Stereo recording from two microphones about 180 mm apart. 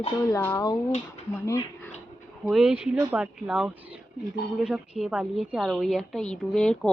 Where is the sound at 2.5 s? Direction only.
Centre (ahead or behind).